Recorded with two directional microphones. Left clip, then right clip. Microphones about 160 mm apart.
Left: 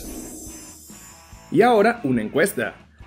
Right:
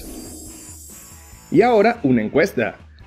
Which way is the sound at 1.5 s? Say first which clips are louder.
Right 2 dB; 40° right (ahead or behind).